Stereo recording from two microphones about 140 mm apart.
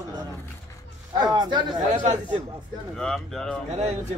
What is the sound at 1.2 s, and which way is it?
Speech, 30° right (ahead or behind).